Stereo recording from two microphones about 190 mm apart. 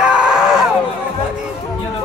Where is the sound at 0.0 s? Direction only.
5° right (ahead or behind).